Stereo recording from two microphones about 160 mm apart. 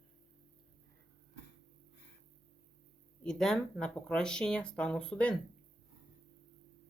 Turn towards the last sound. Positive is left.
turn(degrees=5)  # may be behind; listen again after turning